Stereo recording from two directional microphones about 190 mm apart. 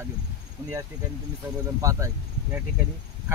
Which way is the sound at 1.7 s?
15° right (ahead or behind).